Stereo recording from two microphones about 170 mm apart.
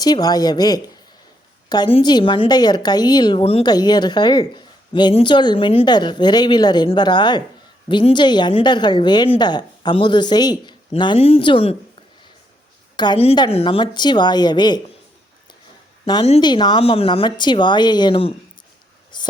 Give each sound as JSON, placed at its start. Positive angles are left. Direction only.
{"t": 0.0, "sound": "a woman's voice", "side_deg": 25}
{"t": 13.0, "sound": "a woman's voice", "side_deg": 30}
{"t": 16.2, "sound": "a woman's voice", "side_deg": 30}
{"t": 19.1, "sound": "a sound", "side_deg": 25}